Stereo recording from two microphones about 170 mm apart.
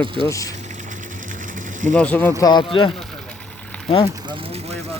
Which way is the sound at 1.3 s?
50° right (ahead or behind).